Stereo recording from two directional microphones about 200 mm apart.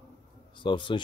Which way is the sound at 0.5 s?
25° left (ahead or behind).